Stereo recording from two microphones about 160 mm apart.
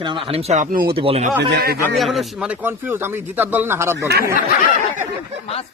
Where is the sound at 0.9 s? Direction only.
35° right (ahead or behind).